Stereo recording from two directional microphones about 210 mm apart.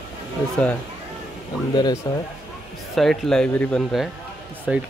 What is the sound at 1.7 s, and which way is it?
Speech, 15° left (ahead or behind).